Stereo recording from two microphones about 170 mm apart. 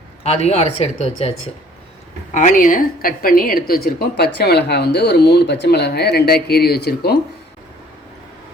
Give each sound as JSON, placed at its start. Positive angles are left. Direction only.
{"t": 0.2, "sound": "a woman's voice", "side_deg": 35}